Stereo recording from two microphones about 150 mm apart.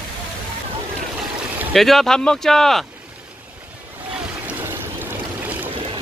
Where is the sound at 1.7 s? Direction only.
Centre (ahead or behind).